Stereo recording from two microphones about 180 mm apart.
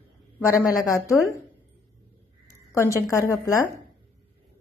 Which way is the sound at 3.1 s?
15° left (ahead or behind).